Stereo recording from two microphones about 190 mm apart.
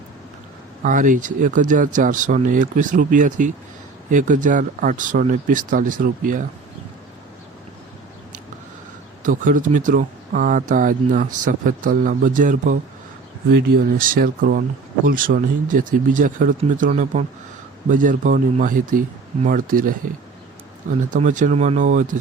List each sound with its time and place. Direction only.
0.8 s speech: 45° right (ahead or behind)
9.2 s speech: 45° right (ahead or behind)
21.1 s speech: 40° right (ahead or behind)